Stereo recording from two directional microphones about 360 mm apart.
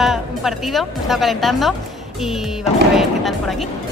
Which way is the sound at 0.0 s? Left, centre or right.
Centre.